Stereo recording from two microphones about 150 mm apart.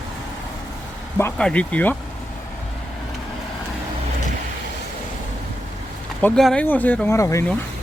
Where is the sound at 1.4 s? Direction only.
5° left (ahead or behind).